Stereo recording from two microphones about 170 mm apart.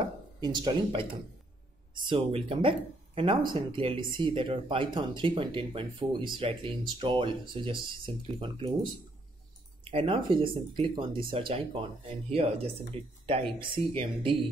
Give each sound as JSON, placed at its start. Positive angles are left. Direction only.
{"t": 0.4, "sound": "speech", "side_deg": -25}
{"t": 2.0, "sound": "speech", "side_deg": -30}
{"t": 9.8, "sound": "speech", "side_deg": -30}